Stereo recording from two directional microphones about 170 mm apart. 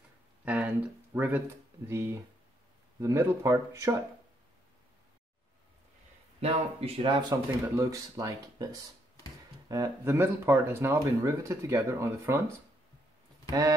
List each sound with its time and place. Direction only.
0.5 s speech: 10° right (ahead or behind)
6.4 s speech: 35° right (ahead or behind); by 8.6 s 20° right (ahead or behind)
9.7 s speech: 15° right (ahead or behind)